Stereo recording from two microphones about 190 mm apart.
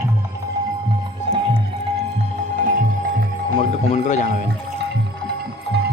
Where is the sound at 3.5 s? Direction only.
40° left (ahead or behind).